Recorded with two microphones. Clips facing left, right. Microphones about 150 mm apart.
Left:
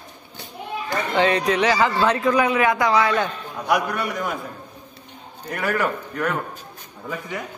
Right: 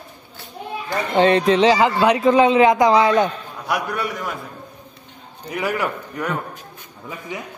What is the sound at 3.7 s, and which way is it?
Speech, centre (ahead or behind).